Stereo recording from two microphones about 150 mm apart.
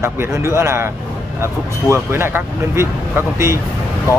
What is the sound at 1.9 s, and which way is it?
Speech, 15° right (ahead or behind).